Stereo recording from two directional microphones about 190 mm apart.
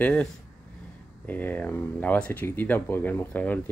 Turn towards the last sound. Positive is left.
turn(degrees=10)  # may be behind; listen again after turning